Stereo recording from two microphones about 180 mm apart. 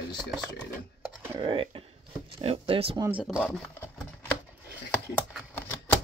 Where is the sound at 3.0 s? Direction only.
10° right (ahead or behind).